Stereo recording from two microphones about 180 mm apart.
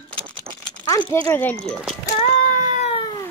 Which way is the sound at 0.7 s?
20° left (ahead or behind).